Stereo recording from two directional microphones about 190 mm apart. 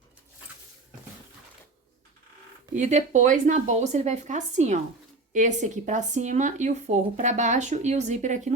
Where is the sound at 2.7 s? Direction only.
40° right (ahead or behind).